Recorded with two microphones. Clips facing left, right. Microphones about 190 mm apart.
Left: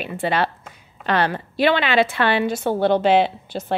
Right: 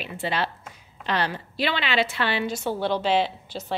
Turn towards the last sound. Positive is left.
turn(degrees=55)  # may be behind; listen again after turning